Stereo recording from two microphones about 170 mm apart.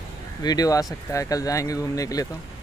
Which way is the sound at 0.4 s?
20° left (ahead or behind).